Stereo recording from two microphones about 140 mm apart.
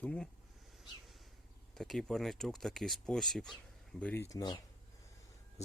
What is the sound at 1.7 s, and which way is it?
Speech, centre (ahead or behind).